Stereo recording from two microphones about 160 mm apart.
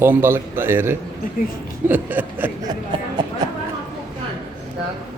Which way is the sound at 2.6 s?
30° right (ahead or behind).